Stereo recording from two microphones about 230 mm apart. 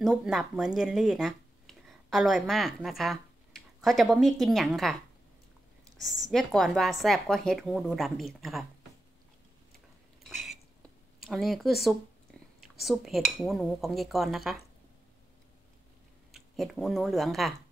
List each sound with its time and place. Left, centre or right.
0.0 s speech: centre
5.9 s speech: centre
10.2 s dishes: centre
11.1 s speech: centre
12.8 s speech: centre
16.3 s speech: centre